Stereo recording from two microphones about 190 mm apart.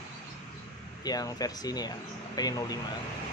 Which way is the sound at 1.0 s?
20° left (ahead or behind).